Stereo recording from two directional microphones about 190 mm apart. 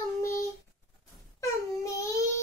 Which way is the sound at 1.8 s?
15° left (ahead or behind).